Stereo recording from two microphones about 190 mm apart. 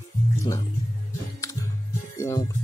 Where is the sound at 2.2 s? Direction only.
15° left (ahead or behind).